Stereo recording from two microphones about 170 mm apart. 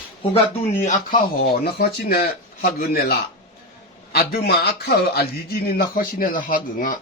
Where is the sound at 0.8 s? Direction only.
50° left (ahead or behind).